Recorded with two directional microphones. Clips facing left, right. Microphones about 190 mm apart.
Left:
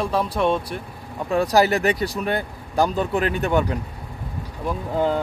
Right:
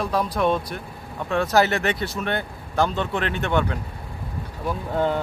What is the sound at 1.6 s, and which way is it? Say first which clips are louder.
Speech: left 3 dB; 35° left (ahead or behind).